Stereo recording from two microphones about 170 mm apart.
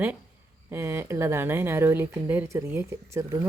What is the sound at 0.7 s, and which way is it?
Speech, 15° right (ahead or behind).